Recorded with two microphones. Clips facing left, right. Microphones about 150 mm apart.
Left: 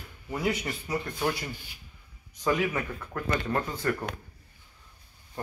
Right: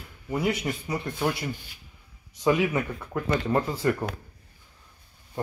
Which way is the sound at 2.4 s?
15° right (ahead or behind).